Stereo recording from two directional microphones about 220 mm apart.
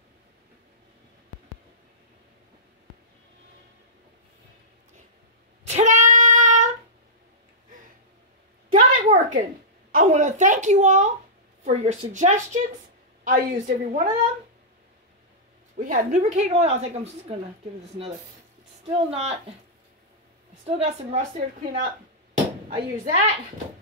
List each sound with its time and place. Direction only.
5.7 s child singing: 35° right (ahead or behind)
8.7 s a sound: 35° right (ahead or behind)
9.9 s a woman's voice: 35° right (ahead or behind)
15.7 s a woman's voice: 40° right (ahead or behind)
20.6 s a woman's voice: 30° right (ahead or behind)
22.7 s a woman's voice: 30° right (ahead or behind)